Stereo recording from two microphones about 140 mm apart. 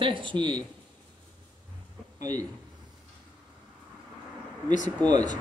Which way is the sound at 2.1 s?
25° right (ahead or behind).